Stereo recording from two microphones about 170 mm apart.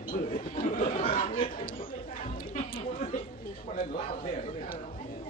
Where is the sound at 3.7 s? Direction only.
50° left (ahead or behind).